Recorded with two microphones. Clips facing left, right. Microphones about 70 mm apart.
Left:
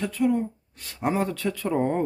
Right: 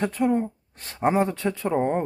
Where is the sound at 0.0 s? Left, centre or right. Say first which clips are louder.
Right 1 dB; right.